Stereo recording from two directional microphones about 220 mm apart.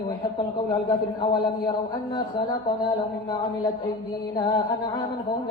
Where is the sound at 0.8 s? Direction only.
15° left (ahead or behind).